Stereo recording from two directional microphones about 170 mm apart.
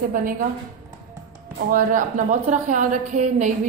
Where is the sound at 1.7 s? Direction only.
50° right (ahead or behind).